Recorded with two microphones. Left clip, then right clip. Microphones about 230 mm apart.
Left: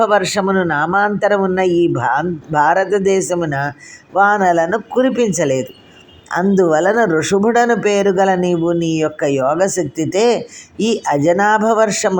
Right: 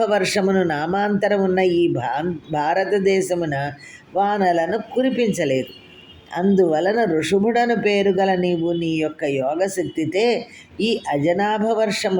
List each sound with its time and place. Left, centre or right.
0.0 s a man's voice: centre